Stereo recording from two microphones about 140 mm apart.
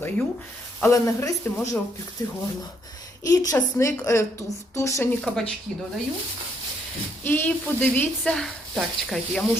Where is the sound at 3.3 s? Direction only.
25° left (ahead or behind).